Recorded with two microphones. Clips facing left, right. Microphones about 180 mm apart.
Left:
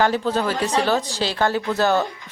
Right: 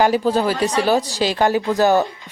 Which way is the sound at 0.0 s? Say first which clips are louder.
Right 4 dB; 10° right (ahead or behind).